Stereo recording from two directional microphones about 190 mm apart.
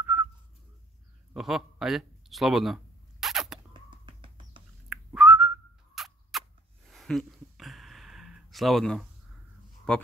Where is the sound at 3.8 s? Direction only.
25° right (ahead or behind).